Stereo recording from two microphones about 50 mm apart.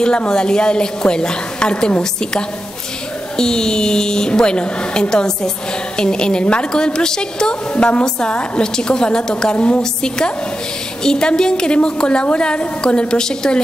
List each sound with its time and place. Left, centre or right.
0.0 s a woman's voice: centre